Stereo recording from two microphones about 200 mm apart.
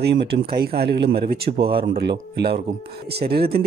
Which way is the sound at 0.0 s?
55° right (ahead or behind).